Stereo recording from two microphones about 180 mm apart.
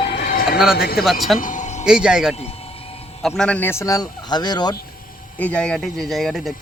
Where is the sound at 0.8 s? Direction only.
60° left (ahead or behind).